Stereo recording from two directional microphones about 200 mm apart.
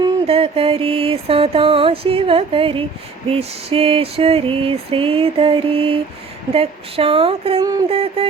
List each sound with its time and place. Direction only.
0.0 s mantra: 30° right (ahead or behind)